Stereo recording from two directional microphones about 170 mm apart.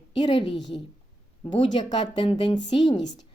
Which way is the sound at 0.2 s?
30° left (ahead or behind).